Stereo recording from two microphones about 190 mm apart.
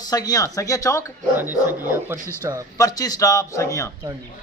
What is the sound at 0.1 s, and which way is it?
Speech, 20° left (ahead or behind).